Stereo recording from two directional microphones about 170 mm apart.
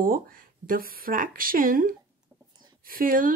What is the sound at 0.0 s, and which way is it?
Speech, 55° right (ahead or behind).